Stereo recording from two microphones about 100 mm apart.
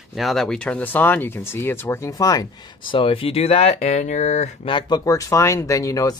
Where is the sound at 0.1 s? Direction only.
Centre (ahead or behind); by 2.4 s 35° left (ahead or behind).